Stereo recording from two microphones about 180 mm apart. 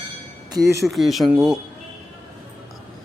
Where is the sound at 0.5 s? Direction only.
15° right (ahead or behind).